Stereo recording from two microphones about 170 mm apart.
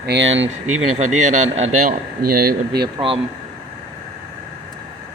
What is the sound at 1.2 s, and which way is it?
Speech, 45° right (ahead or behind).